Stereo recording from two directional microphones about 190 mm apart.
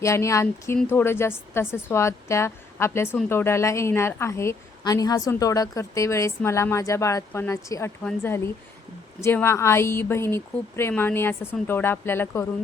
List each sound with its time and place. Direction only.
0.0 s a woman's voice: 15° left (ahead or behind)